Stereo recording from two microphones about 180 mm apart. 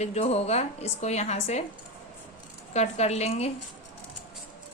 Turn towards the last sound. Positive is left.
turn(degrees=35)  # may be behind; listen again after turning